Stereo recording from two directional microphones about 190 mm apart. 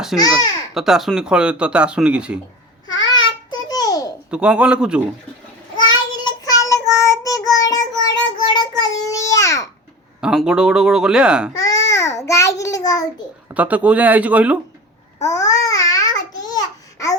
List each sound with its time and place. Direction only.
0.1 s speech: 5° right (ahead or behind)
3.0 s babbling: 20° left (ahead or behind)
4.3 s speech: 5° right (ahead or behind)
5.7 s child singing: 25° left (ahead or behind)
8.8 s a sound: 15° left (ahead or behind)
10.2 s speech: 5° right (ahead or behind)
11.5 s babbling: 20° left (ahead or behind)
13.5 s speech: 10° right (ahead or behind)
15.2 s babbling: 15° left (ahead or behind)